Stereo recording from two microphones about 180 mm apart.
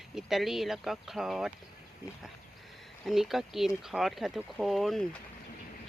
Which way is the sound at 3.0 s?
Centre (ahead or behind).